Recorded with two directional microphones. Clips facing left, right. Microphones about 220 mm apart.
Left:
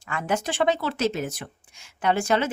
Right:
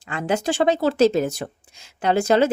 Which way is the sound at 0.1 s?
35° right (ahead or behind).